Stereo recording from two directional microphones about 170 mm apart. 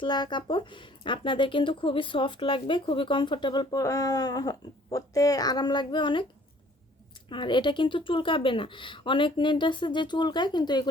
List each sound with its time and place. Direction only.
0.0 s speech: 25° left (ahead or behind)
7.3 s speech: 25° left (ahead or behind)